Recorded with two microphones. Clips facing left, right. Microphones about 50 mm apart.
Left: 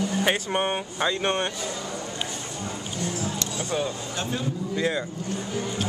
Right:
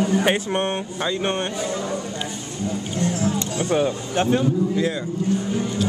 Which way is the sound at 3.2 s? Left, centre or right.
Right.